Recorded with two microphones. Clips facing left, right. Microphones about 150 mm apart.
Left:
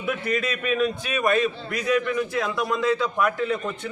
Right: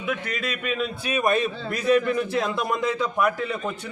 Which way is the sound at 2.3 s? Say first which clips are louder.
Even; 25° right (ahead or behind).